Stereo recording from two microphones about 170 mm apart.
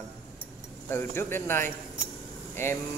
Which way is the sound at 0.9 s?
15° left (ahead or behind).